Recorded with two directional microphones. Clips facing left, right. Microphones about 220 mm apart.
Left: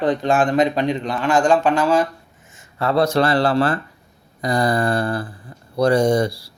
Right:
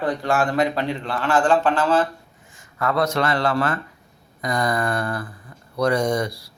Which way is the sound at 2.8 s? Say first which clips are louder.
Left 4 dB; 30° left (ahead or behind).